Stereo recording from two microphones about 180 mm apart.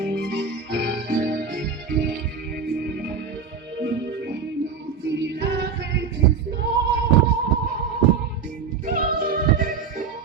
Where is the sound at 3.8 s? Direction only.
75° right (ahead or behind).